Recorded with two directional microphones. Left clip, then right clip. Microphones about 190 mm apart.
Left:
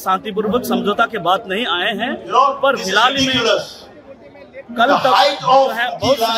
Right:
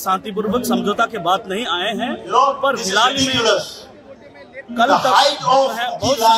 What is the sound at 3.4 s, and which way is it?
Speech, 30° left (ahead or behind).